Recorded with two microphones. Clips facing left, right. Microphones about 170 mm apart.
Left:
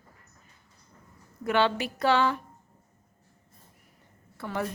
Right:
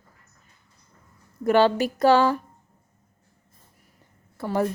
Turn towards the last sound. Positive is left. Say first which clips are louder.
# right 7 dB
turn(degrees=-40)  # may be behind; listen again after turning